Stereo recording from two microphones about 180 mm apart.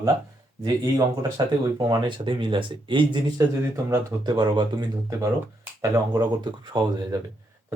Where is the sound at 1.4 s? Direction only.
20° right (ahead or behind).